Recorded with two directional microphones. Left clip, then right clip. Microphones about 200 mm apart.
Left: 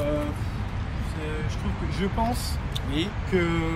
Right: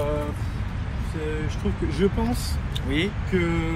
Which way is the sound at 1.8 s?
55° left (ahead or behind).